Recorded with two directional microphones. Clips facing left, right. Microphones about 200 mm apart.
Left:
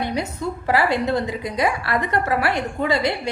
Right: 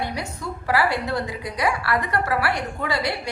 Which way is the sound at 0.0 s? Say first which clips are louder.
Left 4 dB; 20° left (ahead or behind).